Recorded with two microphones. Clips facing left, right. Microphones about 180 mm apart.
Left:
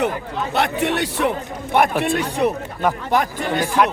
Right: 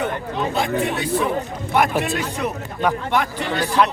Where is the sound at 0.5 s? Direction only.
75° left (ahead or behind).